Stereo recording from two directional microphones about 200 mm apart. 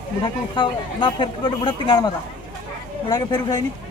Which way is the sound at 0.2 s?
25° left (ahead or behind).